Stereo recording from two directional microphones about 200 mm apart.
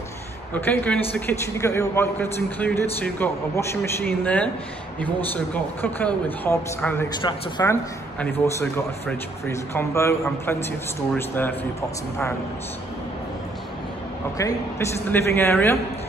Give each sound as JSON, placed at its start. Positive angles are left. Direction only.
{"t": 0.6, "sound": "a man's voice", "side_deg": 10}
{"t": 7.2, "sound": "speech", "side_deg": 20}
{"t": 8.2, "sound": "a man's voice", "side_deg": 10}
{"t": 15.0, "sound": "a man's voice", "side_deg": 10}